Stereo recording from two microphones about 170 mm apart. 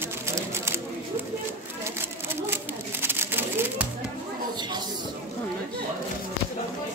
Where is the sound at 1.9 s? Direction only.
15° right (ahead or behind).